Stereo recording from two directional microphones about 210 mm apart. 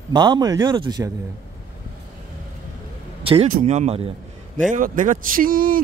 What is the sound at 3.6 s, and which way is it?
Speech, 35° right (ahead or behind).